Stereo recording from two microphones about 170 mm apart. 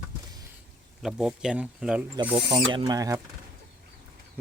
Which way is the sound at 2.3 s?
30° right (ahead or behind).